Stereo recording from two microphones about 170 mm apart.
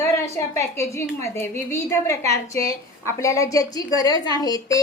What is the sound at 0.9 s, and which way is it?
A woman's voice, 15° left (ahead or behind).